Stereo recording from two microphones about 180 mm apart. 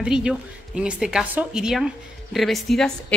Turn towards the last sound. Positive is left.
turn(degrees=0)  # may be behind; listen again after turning